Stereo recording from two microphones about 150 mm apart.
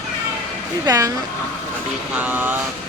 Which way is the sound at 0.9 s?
25° right (ahead or behind).